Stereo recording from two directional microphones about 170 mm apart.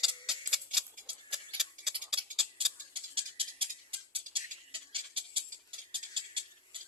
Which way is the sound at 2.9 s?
30° right (ahead or behind).